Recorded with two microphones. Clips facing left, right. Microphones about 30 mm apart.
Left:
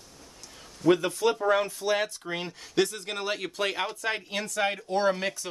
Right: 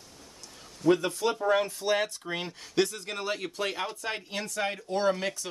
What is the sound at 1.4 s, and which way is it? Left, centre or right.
Speech, left.